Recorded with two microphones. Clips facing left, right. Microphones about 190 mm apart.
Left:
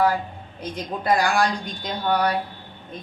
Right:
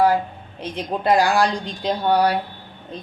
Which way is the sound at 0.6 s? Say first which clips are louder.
Right 4 dB; 25° right (ahead or behind).